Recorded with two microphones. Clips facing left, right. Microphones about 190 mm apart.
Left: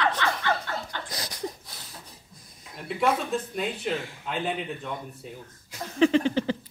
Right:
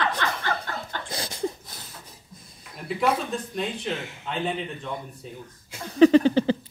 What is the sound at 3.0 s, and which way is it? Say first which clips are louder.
Speech: even; 5° left (ahead or behind).